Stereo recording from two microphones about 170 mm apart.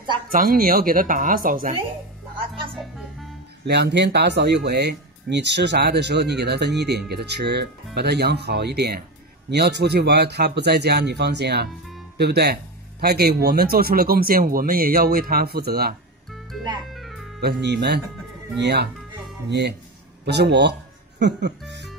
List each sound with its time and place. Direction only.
0.3 s speech: 55° right (ahead or behind)
3.6 s speech: 80° right; by 15.9 s 65° right (ahead or behind)
16.3 s music: centre (ahead or behind)
17.4 s speech: 75° right (ahead or behind)
20.2 s speech: 80° right